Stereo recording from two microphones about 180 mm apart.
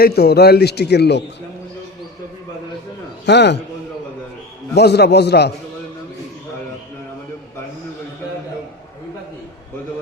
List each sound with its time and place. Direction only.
0.0 s a man's voice: 60° left (ahead or behind)
3.2 s a man's voice: 70° left (ahead or behind)
4.7 s a man's voice: 65° left (ahead or behind)